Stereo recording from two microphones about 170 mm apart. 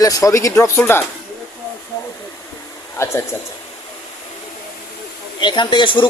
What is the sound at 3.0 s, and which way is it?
Speech, 15° left (ahead or behind).